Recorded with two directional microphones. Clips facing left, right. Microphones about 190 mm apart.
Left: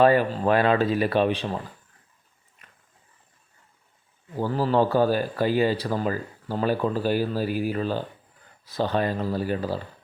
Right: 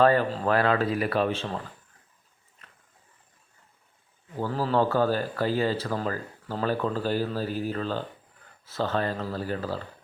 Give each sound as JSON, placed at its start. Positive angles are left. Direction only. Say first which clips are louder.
{"t": 0.0, "sound": "speech", "louder": "left 2 dB", "side_deg": 15}
{"t": 2.6, "sound": "a sound", "louder": "even", "side_deg": 10}
{"t": 4.4, "sound": "speech", "louder": "left 3 dB", "side_deg": 10}